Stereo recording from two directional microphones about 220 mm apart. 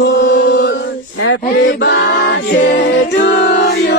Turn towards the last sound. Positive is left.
turn(degrees=50)  # may be behind; listen again after turning